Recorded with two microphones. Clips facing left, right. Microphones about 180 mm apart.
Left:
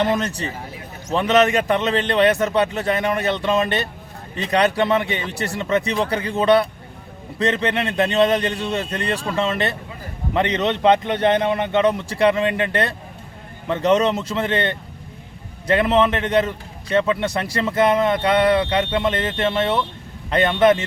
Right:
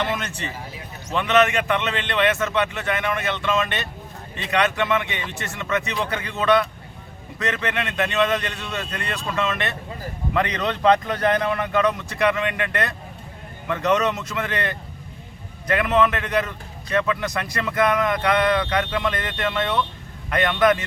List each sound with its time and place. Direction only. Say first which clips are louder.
0.0 s a man's voice: left 6 dB; 35° left (ahead or behind)